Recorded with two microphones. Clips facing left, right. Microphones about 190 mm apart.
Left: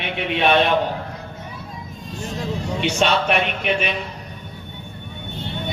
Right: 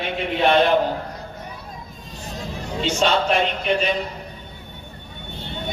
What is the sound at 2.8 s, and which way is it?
Speech, 70° left (ahead or behind).